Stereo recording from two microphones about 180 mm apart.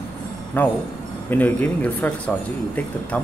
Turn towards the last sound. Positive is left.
turn(degrees=5)  # may be behind; listen again after turning